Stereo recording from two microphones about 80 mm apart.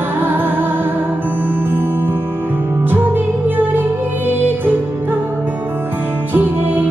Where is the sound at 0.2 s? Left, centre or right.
Right.